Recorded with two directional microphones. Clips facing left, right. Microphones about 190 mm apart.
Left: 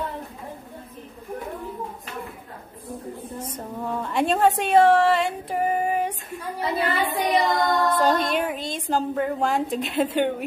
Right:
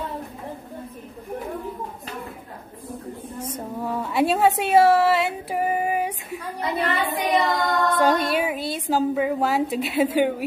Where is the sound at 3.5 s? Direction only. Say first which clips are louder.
Right 2 dB; 5° right (ahead or behind).